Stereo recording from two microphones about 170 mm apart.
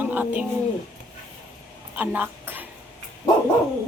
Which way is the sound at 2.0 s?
10° right (ahead or behind).